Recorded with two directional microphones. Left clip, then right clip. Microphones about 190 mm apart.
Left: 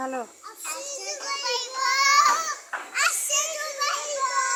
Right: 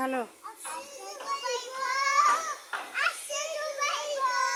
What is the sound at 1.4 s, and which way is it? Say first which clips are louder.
Child singing: left 9 dB; 40° left (ahead or behind).